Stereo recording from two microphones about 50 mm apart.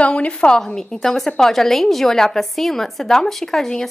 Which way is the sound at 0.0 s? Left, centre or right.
Left.